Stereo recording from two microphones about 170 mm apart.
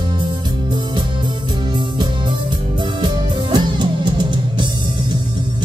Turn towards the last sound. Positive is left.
turn(degrees=-25)  # may be behind; listen again after turning